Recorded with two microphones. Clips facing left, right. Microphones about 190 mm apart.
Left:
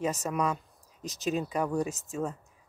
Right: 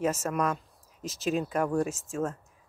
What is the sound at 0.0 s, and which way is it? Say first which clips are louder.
Speech: right 2 dB; centre (ahead or behind).